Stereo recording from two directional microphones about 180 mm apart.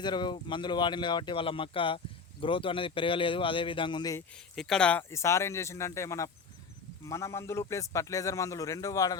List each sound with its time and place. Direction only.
0.0 s speech: 25° left (ahead or behind)
4.5 s a man's voice: 5° left (ahead or behind); by 9.1 s 20° left (ahead or behind)